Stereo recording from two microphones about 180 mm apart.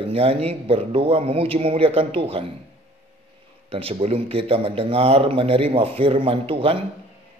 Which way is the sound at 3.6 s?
30° right (ahead or behind).